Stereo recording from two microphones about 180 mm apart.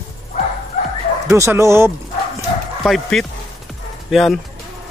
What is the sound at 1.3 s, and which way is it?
Speech, 15° right (ahead or behind).